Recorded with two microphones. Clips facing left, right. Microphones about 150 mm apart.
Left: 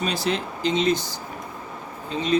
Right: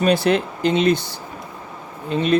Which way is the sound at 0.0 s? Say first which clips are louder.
Right 8 dB; 60° right (ahead or behind).